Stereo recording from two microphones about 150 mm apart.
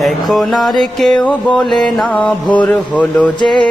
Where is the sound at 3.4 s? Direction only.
30° left (ahead or behind).